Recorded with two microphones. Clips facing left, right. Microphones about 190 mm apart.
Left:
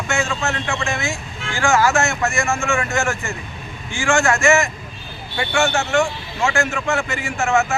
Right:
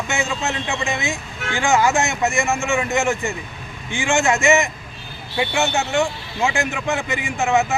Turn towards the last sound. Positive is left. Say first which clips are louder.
# even
turn(degrees=-15)  # may be behind; listen again after turning